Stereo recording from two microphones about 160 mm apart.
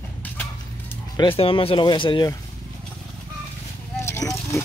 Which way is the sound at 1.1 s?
30° left (ahead or behind).